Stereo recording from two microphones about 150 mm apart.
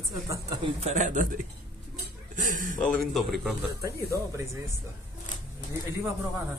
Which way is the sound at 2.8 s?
Centre (ahead or behind).